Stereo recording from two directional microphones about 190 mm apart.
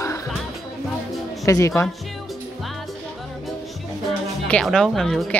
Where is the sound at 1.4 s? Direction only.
15° left (ahead or behind).